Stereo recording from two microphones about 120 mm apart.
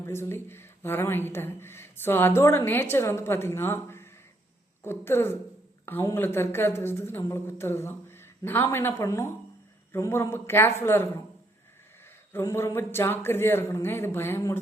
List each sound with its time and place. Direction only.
0.0 s speech: 20° left (ahead or behind)
12.3 s speech: 20° left (ahead or behind)